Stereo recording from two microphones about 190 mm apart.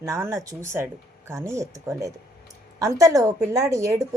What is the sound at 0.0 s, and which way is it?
A woman's voice, 15° right (ahead or behind).